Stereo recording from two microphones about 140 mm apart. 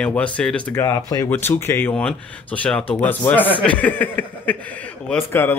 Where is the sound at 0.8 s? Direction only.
25° left (ahead or behind).